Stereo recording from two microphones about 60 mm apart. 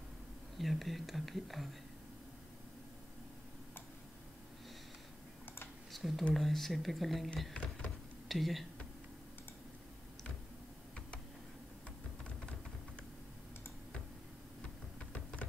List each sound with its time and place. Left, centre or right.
0.6 s speech: centre
5.9 s a sound: centre
6.3 s speech: centre
7.5 s speech: centre
8.3 s speech: centre